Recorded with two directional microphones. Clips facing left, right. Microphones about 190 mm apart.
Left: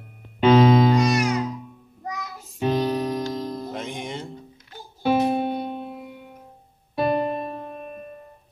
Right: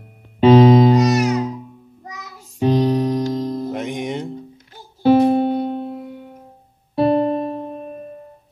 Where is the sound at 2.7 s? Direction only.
20° right (ahead or behind).